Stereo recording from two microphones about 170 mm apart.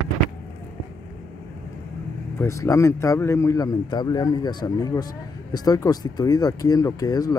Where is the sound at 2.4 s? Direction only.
15° left (ahead or behind).